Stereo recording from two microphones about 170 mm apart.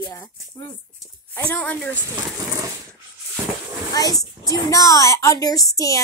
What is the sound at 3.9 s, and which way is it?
Speech, 20° left (ahead or behind).